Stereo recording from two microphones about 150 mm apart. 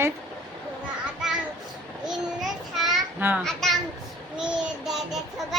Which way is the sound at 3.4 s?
Centre (ahead or behind).